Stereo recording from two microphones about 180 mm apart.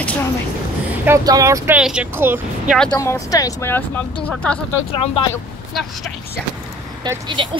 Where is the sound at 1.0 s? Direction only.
20° right (ahead or behind).